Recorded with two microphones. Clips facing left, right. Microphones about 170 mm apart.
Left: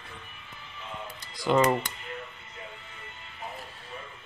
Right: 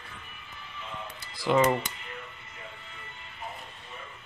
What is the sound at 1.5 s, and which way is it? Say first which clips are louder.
Speech: even; centre (ahead or behind).